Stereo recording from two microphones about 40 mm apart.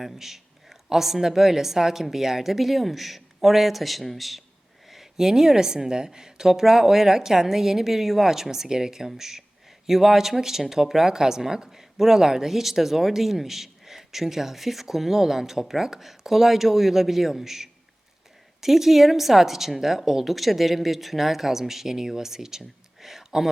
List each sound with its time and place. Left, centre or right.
0.0 s speech: centre